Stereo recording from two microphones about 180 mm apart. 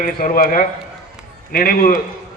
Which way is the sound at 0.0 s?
50° left (ahead or behind).